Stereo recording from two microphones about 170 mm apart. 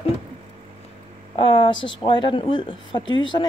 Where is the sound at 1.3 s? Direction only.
30° left (ahead or behind).